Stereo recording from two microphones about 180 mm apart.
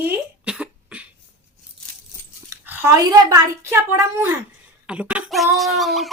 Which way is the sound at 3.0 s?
20° right (ahead or behind).